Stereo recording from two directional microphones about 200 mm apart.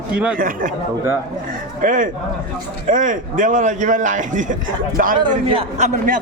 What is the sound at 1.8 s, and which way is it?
A man's voice, 40° right (ahead or behind).